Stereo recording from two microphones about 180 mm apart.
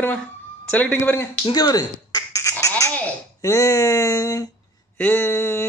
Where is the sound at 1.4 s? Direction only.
20° left (ahead or behind).